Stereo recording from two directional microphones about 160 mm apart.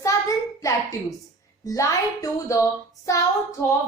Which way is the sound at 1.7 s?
20° left (ahead or behind).